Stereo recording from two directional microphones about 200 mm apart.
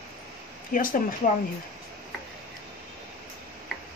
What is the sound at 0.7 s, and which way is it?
Speech, 45° left (ahead or behind).